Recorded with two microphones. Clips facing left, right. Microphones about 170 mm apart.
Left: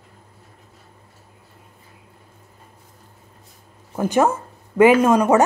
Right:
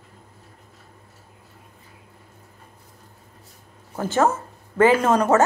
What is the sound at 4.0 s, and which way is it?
Speech, 15° left (ahead or behind).